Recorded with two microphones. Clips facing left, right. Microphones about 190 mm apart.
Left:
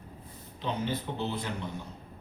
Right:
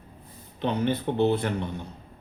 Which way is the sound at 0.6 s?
60° right (ahead or behind).